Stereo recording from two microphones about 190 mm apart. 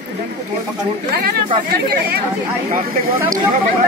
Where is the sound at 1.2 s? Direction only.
55° right (ahead or behind).